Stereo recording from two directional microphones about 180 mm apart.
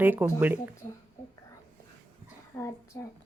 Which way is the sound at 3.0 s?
15° left (ahead or behind).